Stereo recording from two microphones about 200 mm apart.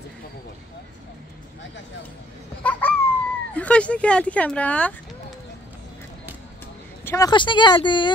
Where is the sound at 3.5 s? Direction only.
5° left (ahead or behind).